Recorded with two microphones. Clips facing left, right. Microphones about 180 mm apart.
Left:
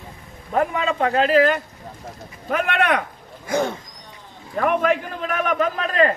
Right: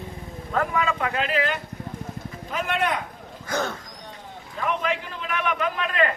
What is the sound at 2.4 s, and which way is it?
Speech, 65° left (ahead or behind).